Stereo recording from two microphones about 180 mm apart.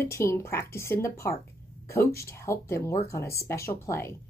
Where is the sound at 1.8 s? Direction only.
15° left (ahead or behind).